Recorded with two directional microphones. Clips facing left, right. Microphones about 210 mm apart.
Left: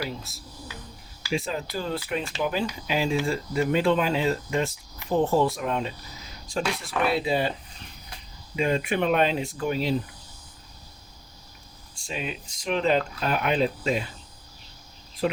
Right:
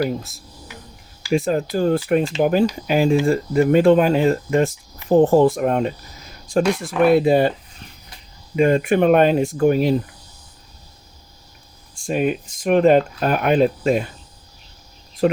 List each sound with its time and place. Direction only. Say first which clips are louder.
0.0 s speech: right 11 dB; 50° right (ahead or behind)
8.5 s speech: right 9 dB; 50° right (ahead or behind)
11.9 s speech: right 13 dB; 50° right (ahead or behind)
15.2 s speech: right 8 dB; 50° right (ahead or behind)